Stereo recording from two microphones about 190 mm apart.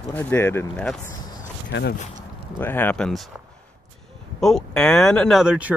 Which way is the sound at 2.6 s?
10° left (ahead or behind).